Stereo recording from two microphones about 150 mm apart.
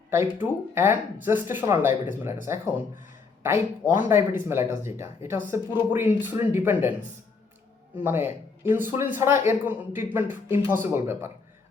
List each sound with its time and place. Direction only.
0.1 s speech: 15° right (ahead or behind)
7.9 s speech: 15° right (ahead or behind)